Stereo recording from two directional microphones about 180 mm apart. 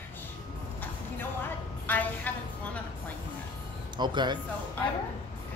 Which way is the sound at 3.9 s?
25° right (ahead or behind).